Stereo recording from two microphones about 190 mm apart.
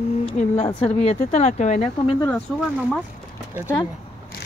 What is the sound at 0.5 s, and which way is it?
Speech, 30° left (ahead or behind).